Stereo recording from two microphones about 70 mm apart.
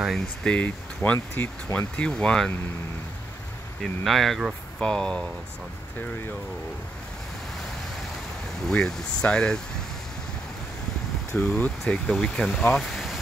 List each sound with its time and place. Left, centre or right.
0.1 s speech: centre
3.8 s speech: centre
5.9 s speech: left
8.6 s speech: centre
11.3 s speech: left
11.9 s speech: centre
12.7 s speech: centre